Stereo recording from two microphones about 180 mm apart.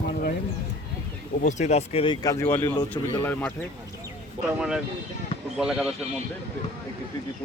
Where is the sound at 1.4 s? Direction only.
40° left (ahead or behind); by 3.5 s 10° left (ahead or behind).